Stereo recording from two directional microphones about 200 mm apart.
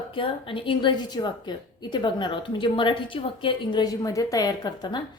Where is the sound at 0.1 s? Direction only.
25° left (ahead or behind).